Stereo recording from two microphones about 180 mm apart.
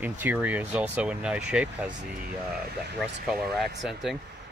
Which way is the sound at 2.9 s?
Centre (ahead or behind).